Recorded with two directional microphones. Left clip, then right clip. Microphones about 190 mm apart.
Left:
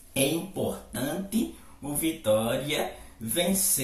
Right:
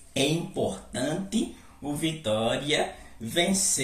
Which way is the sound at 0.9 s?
Centre (ahead or behind).